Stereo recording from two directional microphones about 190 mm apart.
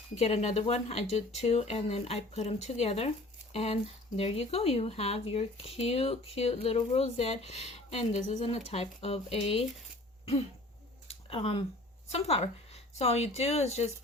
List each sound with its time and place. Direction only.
0.2 s speech: 35° left (ahead or behind)
11.1 s a sound: 30° left (ahead or behind)
12.1 s speech: 35° left (ahead or behind)